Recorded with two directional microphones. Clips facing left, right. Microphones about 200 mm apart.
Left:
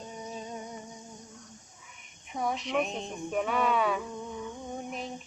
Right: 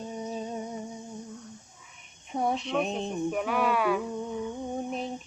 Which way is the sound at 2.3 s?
30° right (ahead or behind).